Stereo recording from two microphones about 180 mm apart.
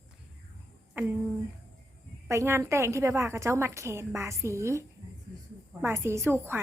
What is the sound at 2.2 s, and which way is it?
A woman's voice, 15° right (ahead or behind).